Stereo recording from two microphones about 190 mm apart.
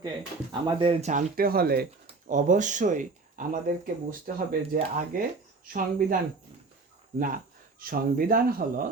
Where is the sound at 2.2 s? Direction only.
40° right (ahead or behind).